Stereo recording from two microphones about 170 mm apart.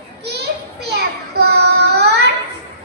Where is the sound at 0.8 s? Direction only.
75° right (ahead or behind).